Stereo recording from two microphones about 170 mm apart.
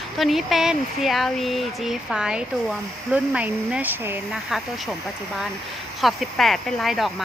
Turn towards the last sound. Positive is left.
turn(degrees=0)  # may be behind; listen again after turning